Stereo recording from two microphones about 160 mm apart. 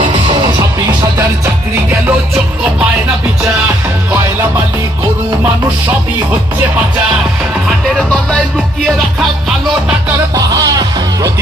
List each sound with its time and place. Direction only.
0.1 s music: 30° right (ahead or behind)
7.9 s music: 5° left (ahead or behind)
10.3 s music: 20° right (ahead or behind)